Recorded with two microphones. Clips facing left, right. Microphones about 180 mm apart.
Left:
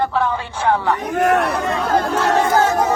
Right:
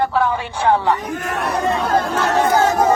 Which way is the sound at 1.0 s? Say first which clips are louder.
Left 7 dB; 60° left (ahead or behind).